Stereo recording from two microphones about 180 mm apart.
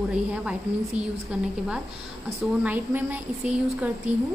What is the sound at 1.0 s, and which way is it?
Speech, 10° right (ahead or behind).